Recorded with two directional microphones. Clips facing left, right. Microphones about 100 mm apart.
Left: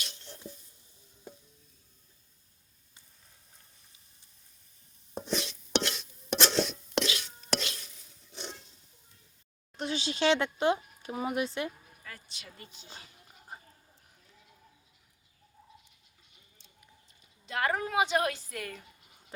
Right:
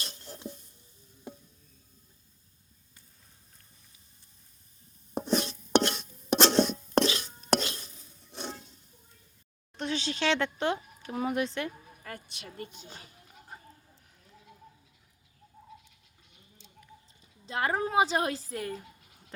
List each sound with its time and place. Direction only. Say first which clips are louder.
0.0 s a sound: right 2 dB; 40° right (ahead or behind)
5.2 s stir: right 5 dB; 45° right (ahead or behind)
9.7 s speech: right 1 dB; 5° left (ahead or behind)
12.0 s a woman's voice: right 5 dB; 55° right (ahead or behind)
17.4 s a woman's voice: right 1 dB; 30° right (ahead or behind)